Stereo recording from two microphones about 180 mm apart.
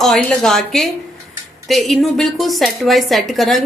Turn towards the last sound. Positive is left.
turn(degrees=0)  # may be behind; listen again after turning